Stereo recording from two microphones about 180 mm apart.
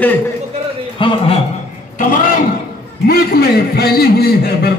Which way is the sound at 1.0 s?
30° left (ahead or behind).